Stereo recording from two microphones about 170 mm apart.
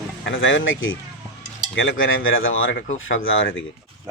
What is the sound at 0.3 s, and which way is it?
Speech, 90° left.